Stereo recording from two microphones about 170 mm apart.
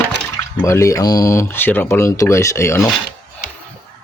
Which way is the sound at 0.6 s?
15° left (ahead or behind).